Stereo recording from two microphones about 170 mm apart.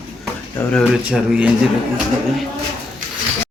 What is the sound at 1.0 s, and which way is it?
Speech, 5° right (ahead or behind).